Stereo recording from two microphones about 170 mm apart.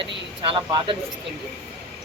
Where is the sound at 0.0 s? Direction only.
30° right (ahead or behind).